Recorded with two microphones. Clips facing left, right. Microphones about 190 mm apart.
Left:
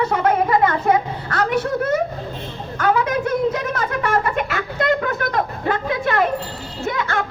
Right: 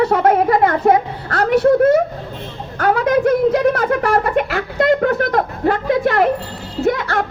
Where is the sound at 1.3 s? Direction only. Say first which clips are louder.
Right 8 dB; 65° right (ahead or behind).